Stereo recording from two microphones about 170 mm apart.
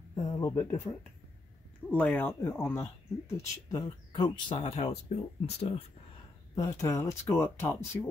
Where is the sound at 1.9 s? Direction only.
10° left (ahead or behind).